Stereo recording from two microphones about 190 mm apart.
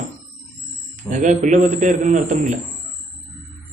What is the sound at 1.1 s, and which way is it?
A man's voice, 40° right (ahead or behind).